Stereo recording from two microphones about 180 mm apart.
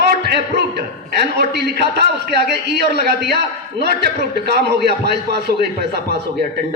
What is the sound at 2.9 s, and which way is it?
A man's voice, 65° right (ahead or behind).